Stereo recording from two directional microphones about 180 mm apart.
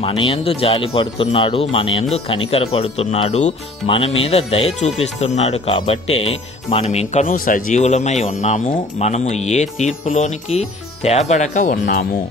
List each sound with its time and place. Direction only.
0.0 s speech: 30° left (ahead or behind); by 12.1 s 55° left (ahead or behind)